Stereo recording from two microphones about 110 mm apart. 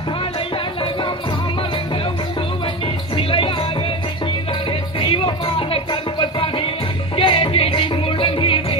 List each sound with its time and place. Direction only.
3.2 s music: 55° left (ahead or behind)
5.0 s music: 55° left (ahead or behind)
7.2 s music: 55° left (ahead or behind)